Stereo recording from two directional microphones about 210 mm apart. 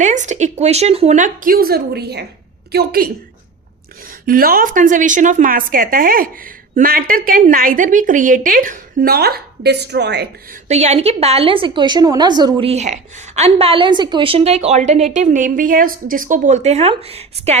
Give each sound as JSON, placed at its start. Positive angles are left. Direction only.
{"t": 0.0, "sound": "a woman's voice", "side_deg": -35}
{"t": 4.3, "sound": "a woman's voice", "side_deg": -45}
{"t": 10.7, "sound": "a woman's voice", "side_deg": -30}